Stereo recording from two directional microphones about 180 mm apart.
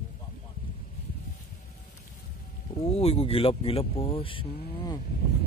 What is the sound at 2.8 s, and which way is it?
Speech, 35° left (ahead or behind).